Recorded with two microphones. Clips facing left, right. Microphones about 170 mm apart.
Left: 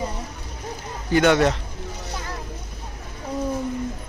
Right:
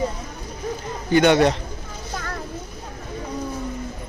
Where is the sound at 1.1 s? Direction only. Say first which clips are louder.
Right 2 dB; centre (ahead or behind).